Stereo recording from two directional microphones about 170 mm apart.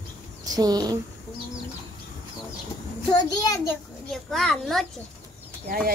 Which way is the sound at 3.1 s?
20° left (ahead or behind).